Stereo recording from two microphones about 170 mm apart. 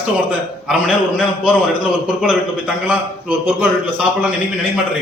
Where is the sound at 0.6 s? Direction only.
Centre (ahead or behind).